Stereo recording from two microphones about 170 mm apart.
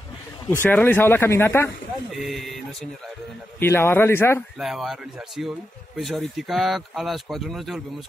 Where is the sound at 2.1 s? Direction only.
Centre (ahead or behind).